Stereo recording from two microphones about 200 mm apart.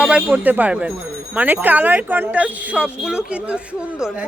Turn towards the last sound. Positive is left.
turn(degrees=-5)  # may be behind; listen again after turning